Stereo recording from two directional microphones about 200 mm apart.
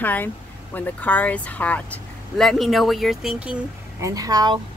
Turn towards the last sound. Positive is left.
turn(degrees=-20)  # may be behind; listen again after turning